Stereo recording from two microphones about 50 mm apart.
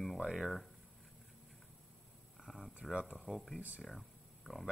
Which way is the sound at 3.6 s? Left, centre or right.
Right.